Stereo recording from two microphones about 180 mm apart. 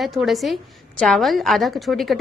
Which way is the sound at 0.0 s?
Centre (ahead or behind).